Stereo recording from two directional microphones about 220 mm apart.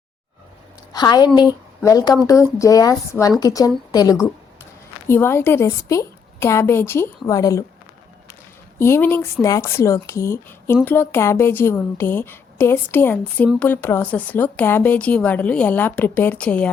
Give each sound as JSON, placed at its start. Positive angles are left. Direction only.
{"t": 0.9, "sound": "a woman's voice", "side_deg": 20}
{"t": 8.8, "sound": "speech", "side_deg": 10}